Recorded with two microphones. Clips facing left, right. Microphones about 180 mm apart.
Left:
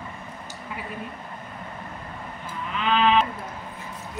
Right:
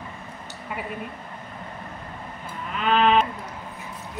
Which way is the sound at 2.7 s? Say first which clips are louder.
Right 1 dB; 45° right (ahead or behind).